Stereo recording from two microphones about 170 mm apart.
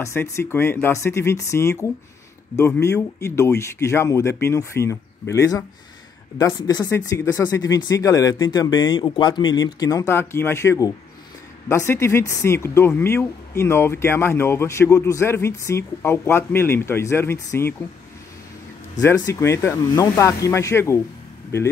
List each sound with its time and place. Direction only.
0.0 s speech: 15° left (ahead or behind)
18.9 s speech: 20° left (ahead or behind)